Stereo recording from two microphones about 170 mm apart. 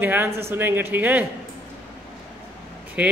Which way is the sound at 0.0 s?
15° right (ahead or behind).